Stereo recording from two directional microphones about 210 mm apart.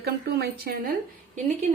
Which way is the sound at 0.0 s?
50° right (ahead or behind).